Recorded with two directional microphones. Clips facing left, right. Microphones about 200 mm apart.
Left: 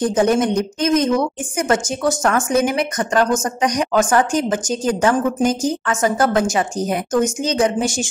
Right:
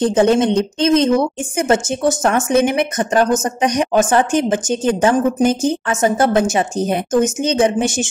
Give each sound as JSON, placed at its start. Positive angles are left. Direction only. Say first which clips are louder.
{"t": 0.0, "sound": "a woman's voice", "louder": "right 3 dB", "side_deg": -25}